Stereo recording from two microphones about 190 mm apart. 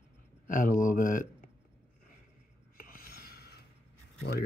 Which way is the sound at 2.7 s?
45° left (ahead or behind).